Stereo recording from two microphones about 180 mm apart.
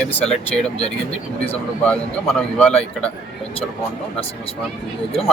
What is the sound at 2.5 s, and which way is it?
Speech, 5° left (ahead or behind).